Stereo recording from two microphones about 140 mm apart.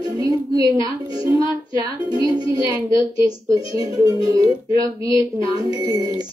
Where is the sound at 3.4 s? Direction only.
25° right (ahead or behind).